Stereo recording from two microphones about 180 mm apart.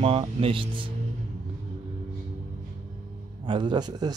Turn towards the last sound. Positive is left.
turn(degrees=-25)  # may be behind; listen again after turning